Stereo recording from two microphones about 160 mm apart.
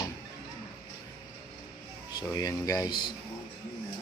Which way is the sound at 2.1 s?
20° left (ahead or behind).